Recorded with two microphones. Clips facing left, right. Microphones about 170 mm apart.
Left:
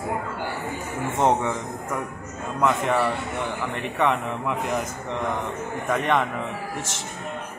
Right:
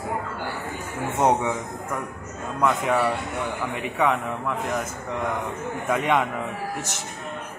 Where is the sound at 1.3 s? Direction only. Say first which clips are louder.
Right 1 dB; 10° right (ahead or behind).